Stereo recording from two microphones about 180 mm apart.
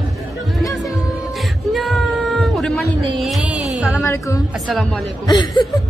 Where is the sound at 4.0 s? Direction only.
15° left (ahead or behind).